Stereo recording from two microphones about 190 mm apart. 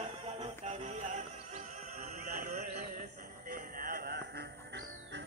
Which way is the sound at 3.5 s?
50° right (ahead or behind).